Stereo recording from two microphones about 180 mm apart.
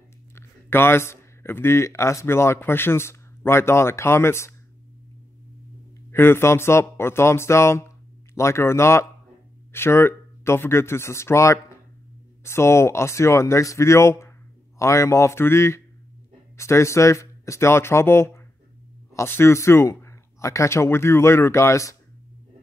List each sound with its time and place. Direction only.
0.3 s speech: 15° left (ahead or behind)
6.1 s speech: 15° left (ahead or behind)